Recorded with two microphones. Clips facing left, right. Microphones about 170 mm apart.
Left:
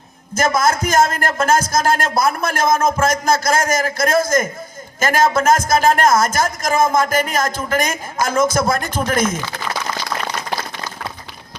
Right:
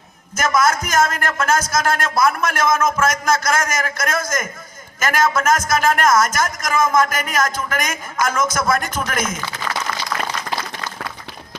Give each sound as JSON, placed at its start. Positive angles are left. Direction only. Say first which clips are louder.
{"t": 0.3, "sound": "speech", "louder": "left 1 dB", "side_deg": 35}